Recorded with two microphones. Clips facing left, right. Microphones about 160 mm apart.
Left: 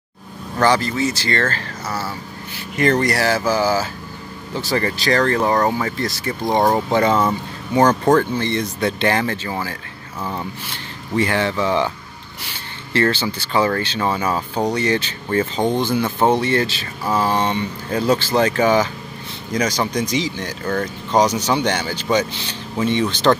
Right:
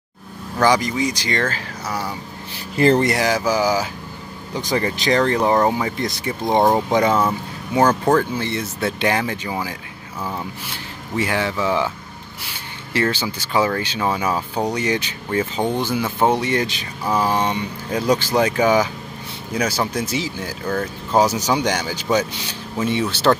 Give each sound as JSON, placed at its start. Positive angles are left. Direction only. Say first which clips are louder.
{"t": 0.6, "sound": "speech", "louder": "even", "side_deg": -10}
{"t": 2.7, "sound": "speech", "louder": "right 2 dB", "side_deg": -30}